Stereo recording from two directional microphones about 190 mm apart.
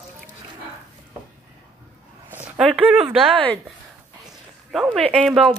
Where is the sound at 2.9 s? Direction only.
5° right (ahead or behind).